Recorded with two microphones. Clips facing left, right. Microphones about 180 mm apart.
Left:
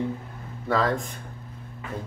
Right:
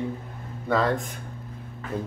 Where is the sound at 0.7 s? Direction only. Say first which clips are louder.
Right 1 dB; centre (ahead or behind).